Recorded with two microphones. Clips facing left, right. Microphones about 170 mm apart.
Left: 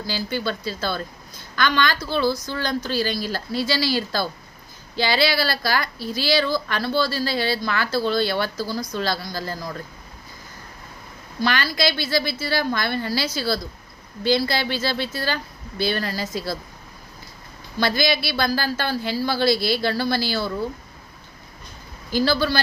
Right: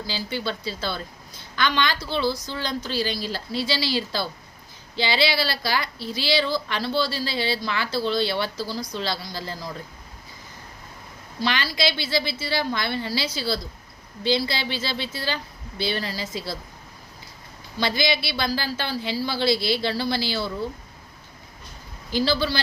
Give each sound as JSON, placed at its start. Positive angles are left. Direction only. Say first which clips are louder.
{"t": 0.1, "sound": "speech", "louder": "left 3 dB", "side_deg": 45}
{"t": 2.1, "sound": "speech", "louder": "left 3 dB", "side_deg": 50}
{"t": 11.3, "sound": "speech", "louder": "left 3 dB", "side_deg": 50}
{"t": 17.7, "sound": "speech", "louder": "left 3 dB", "side_deg": 50}
{"t": 22.1, "sound": "speech", "louder": "left 3 dB", "side_deg": 50}